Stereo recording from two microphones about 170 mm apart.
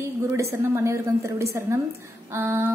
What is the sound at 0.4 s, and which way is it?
Speech, 15° right (ahead or behind).